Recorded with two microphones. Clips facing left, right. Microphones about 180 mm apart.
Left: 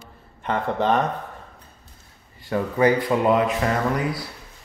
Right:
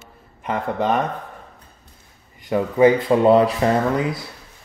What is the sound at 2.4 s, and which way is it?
Speech, 20° right (ahead or behind).